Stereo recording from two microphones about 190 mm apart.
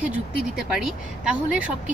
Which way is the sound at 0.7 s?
5° right (ahead or behind).